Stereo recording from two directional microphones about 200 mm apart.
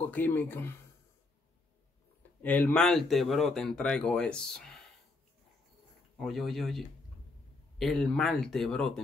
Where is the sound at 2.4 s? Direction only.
10° left (ahead or behind).